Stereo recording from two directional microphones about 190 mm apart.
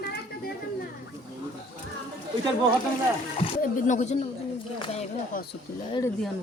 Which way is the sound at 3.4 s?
40° left (ahead or behind).